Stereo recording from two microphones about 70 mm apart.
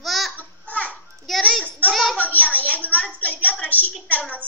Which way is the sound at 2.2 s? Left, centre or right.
Left.